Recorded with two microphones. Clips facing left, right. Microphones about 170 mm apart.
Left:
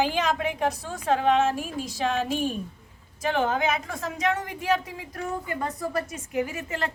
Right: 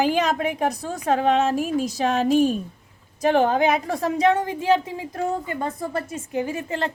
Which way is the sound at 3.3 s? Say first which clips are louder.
Right 6 dB; 35° right (ahead or behind).